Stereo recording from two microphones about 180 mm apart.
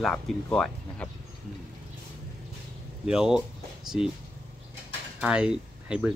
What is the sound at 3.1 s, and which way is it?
Speech, 5° right (ahead or behind).